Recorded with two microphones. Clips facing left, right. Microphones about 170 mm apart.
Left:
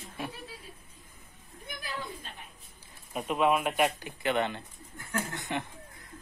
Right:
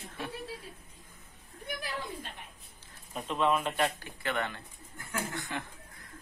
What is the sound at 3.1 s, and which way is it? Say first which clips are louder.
Speech: left 3 dB; 10° left (ahead or behind).